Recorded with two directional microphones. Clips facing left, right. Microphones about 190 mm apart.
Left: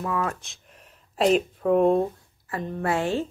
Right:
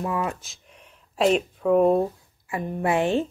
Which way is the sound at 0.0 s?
15° right (ahead or behind).